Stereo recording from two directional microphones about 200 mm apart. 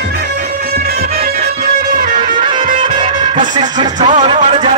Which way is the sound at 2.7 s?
25° right (ahead or behind).